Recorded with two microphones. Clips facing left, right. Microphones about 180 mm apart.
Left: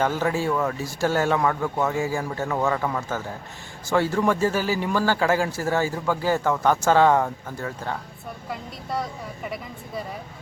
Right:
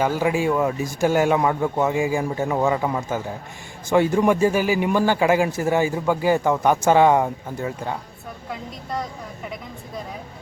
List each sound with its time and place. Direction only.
0.0 s a man's voice: 10° right (ahead or behind)
8.4 s a woman's voice: centre (ahead or behind)